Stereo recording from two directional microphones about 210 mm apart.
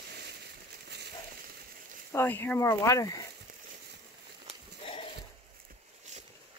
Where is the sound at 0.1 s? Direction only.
50° right (ahead or behind).